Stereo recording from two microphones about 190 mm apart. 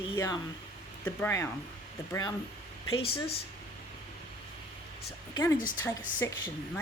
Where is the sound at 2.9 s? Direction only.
30° left (ahead or behind).